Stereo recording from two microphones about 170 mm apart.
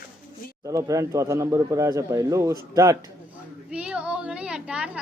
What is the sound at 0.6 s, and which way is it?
A man's voice, 20° right (ahead or behind).